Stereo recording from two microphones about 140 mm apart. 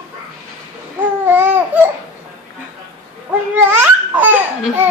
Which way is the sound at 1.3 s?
15° right (ahead or behind).